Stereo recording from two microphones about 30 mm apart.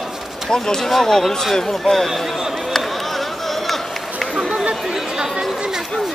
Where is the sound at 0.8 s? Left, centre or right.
Centre.